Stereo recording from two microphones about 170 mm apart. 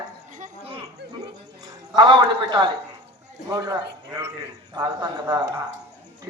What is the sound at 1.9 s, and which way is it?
A man's voice, 25° right (ahead or behind).